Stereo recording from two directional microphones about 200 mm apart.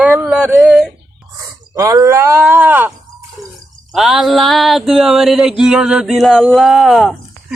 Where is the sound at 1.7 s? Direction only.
15° right (ahead or behind).